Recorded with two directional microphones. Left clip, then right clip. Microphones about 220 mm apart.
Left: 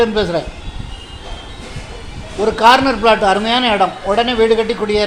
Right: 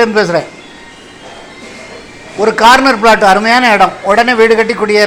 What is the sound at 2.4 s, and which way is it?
A man's voice, 15° right (ahead or behind).